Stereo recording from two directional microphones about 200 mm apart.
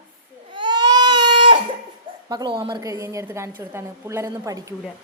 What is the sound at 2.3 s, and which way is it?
A woman's voice, 20° right (ahead or behind).